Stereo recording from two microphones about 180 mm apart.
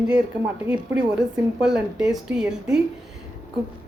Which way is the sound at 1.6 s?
5° right (ahead or behind).